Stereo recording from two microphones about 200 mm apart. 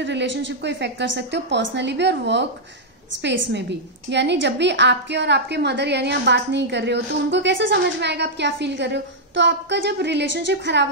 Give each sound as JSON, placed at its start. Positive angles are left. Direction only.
{"t": 0.0, "sound": "a woman's voice", "side_deg": -60}